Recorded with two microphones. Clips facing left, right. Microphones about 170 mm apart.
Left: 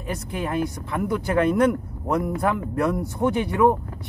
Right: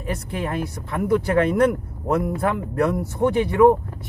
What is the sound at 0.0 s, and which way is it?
Speech, centre (ahead or behind).